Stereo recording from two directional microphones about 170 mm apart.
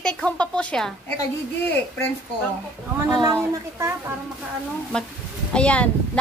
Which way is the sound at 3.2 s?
15° right (ahead or behind).